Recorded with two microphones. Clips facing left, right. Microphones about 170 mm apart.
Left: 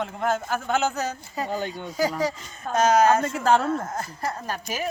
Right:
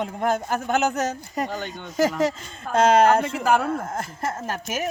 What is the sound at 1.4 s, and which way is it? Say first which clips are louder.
Speech: left 3 dB; centre (ahead or behind).